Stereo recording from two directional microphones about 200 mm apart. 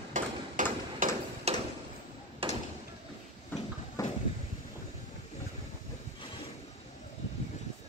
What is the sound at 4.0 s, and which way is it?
Vehicle, 15° left (ahead or behind).